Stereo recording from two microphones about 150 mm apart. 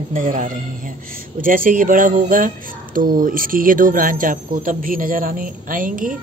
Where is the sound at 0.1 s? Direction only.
60° right (ahead or behind).